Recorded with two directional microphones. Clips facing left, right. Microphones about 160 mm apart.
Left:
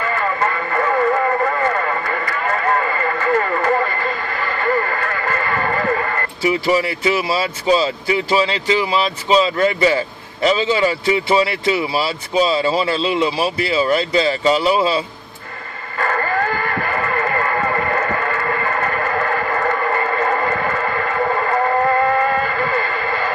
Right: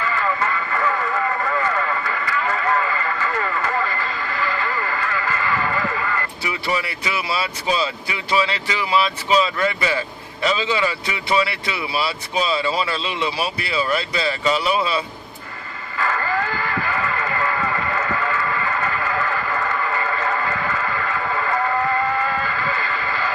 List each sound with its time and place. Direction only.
0.0 s radio: 50° left (ahead or behind)
6.4 s speech: 30° left (ahead or behind)
16.0 s a sound: 50° left (ahead or behind)